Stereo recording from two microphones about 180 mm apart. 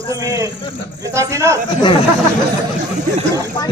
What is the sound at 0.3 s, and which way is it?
A man's voice, 20° right (ahead or behind).